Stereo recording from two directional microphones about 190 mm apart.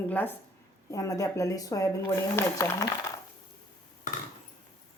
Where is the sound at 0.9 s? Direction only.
15° left (ahead or behind).